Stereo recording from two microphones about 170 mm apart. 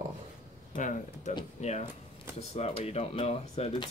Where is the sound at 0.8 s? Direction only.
50° left (ahead or behind).